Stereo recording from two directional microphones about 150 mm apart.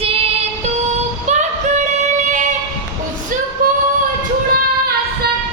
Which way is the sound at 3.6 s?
65° right (ahead or behind).